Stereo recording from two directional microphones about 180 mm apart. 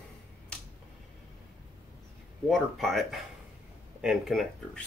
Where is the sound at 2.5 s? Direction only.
Centre (ahead or behind).